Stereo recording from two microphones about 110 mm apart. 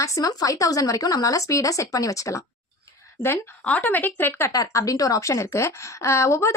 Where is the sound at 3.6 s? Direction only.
15° left (ahead or behind).